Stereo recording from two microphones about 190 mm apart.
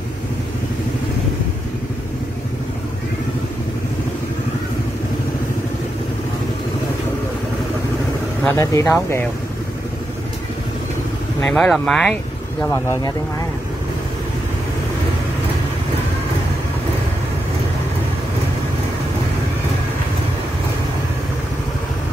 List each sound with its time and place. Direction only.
8.5 s speech: 15° left (ahead or behind)
11.4 s speech: 5° left (ahead or behind)
12.6 s speech: 15° left (ahead or behind)